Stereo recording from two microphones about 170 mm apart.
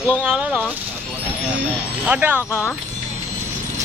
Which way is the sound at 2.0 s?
10° right (ahead or behind).